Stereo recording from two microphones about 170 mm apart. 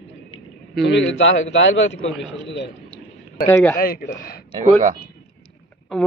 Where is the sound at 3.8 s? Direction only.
55° left (ahead or behind).